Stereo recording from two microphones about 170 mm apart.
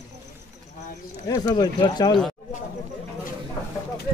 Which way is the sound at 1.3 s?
20° left (ahead or behind).